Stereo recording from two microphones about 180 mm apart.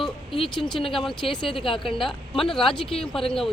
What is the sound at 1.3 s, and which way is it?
Speech, 30° left (ahead or behind).